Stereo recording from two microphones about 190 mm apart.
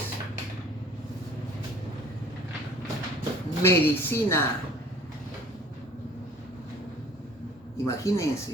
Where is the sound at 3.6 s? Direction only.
10° left (ahead or behind).